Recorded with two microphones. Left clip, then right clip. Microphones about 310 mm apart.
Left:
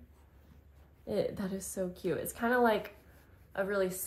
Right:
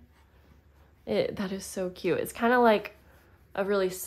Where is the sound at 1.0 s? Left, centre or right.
Centre.